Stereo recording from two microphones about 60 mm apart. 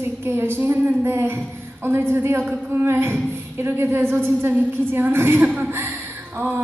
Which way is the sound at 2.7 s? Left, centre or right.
Right.